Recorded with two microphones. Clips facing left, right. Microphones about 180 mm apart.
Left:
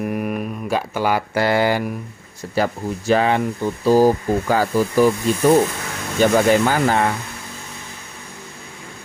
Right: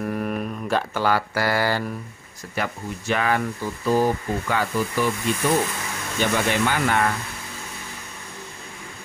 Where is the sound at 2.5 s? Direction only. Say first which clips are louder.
Left 7 dB; 35° left (ahead or behind).